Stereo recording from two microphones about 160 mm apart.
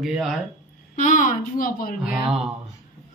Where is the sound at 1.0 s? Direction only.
50° left (ahead or behind).